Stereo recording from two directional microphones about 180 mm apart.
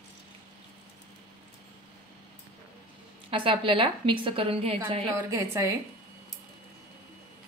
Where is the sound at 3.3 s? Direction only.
30° right (ahead or behind).